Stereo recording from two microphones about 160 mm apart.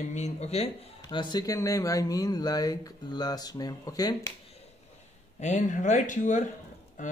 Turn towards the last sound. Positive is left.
turn(degrees=50)  # may be behind; listen again after turning